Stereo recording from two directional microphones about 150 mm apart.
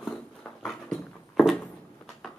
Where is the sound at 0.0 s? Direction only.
5° left (ahead or behind).